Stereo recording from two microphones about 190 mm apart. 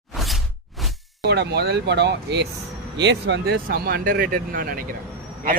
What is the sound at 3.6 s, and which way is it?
Speech, 55° right (ahead or behind).